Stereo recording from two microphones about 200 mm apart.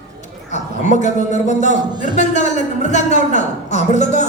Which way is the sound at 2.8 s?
35° left (ahead or behind).